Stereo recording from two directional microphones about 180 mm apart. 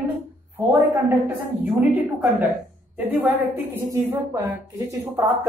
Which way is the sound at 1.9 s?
10° right (ahead or behind).